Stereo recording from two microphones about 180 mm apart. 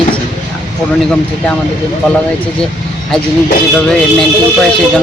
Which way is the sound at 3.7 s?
5° left (ahead or behind).